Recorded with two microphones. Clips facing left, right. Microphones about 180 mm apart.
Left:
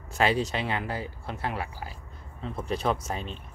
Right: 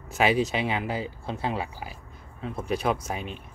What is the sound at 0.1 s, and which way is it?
Speech, 10° right (ahead or behind).